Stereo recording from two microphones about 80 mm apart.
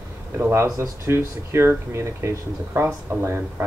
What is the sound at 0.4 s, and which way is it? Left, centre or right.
Speech, right.